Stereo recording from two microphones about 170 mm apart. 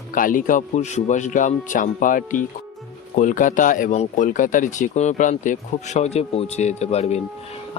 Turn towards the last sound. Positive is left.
turn(degrees=40)  # may be behind; listen again after turning